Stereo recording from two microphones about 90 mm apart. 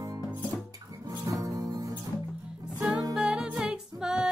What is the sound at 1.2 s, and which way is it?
Music, 40° right (ahead or behind).